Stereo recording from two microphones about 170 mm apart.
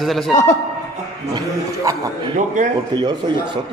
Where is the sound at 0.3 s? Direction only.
45° left (ahead or behind).